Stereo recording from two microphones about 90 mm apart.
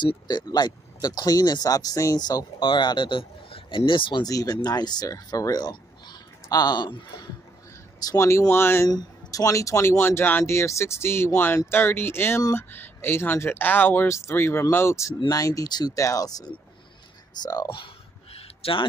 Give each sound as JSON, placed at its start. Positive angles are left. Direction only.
{"t": 0.3, "sound": "speech", "side_deg": 50}
{"t": 4.2, "sound": "speech", "side_deg": 45}
{"t": 8.0, "sound": "speech", "side_deg": 35}
{"t": 8.8, "sound": "speech", "side_deg": 40}
{"t": 18.6, "sound": "speech", "side_deg": 75}